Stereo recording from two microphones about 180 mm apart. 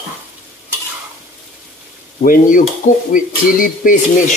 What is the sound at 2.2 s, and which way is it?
Speech, 50° left (ahead or behind).